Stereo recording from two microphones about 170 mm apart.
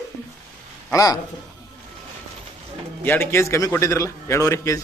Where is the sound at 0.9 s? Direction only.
20° left (ahead or behind).